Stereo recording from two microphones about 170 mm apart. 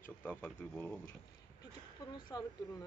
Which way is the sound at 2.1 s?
25° left (ahead or behind).